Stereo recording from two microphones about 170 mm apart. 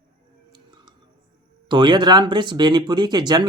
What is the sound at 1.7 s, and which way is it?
Speech, 25° right (ahead or behind).